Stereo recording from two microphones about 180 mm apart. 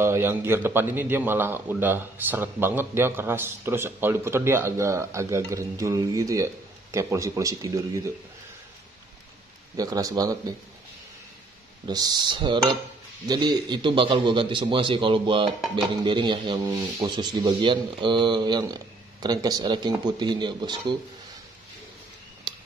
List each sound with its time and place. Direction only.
0.0 s a man's voice: 15° right (ahead or behind)
9.8 s speech: 20° right (ahead or behind)
11.9 s speech: 20° right (ahead or behind)